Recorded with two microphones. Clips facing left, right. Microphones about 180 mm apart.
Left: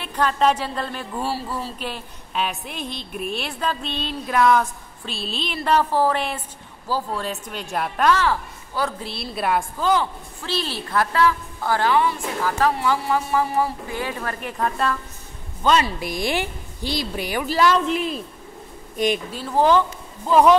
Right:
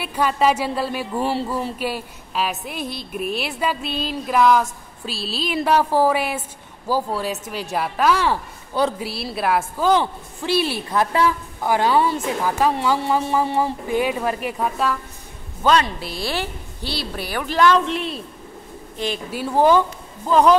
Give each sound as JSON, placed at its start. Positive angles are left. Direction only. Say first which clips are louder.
{"t": 0.0, "sound": "speech", "louder": "right 1 dB", "side_deg": -10}
{"t": 1.2, "sound": "a woman's voice", "louder": "right 4 dB", "side_deg": -20}
{"t": 1.8, "sound": "speech", "louder": "right 5 dB", "side_deg": -10}
{"t": 8.3, "sound": "speech", "louder": "right 1 dB", "side_deg": -20}
{"t": 9.0, "sound": "speech", "louder": "right 2 dB", "side_deg": -5}
{"t": 9.9, "sound": "speech", "louder": "right 3 dB", "side_deg": -15}
{"t": 11.9, "sound": "a woman's voice", "louder": "right 2 dB", "side_deg": -25}
{"t": 15.6, "sound": "speech", "louder": "right 1 dB", "side_deg": 5}
{"t": 19.3, "sound": "speech", "louder": "right 4 dB", "side_deg": -10}
{"t": 20.2, "sound": "speech", "louder": "even", "side_deg": 5}